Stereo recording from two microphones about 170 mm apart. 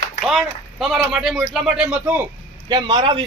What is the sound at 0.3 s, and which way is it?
Speech, 5° right (ahead or behind).